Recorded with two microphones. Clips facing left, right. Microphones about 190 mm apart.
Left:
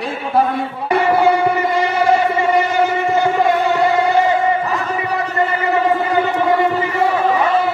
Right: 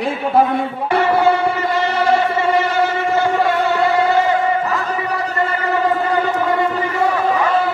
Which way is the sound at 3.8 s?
20° left (ahead or behind).